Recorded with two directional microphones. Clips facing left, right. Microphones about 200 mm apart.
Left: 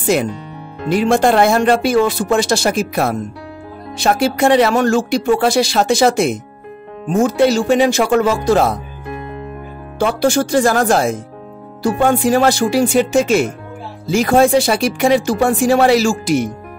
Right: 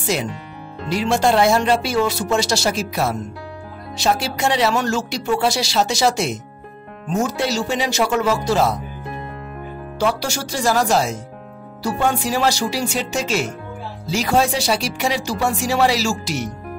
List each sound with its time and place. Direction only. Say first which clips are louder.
0.0 s speech: left 7 dB; 55° left (ahead or behind)
9.9 s speech: left 7 dB; 55° left (ahead or behind)